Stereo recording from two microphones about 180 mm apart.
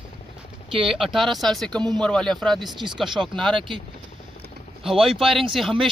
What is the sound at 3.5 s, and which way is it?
Speech, 25° right (ahead or behind).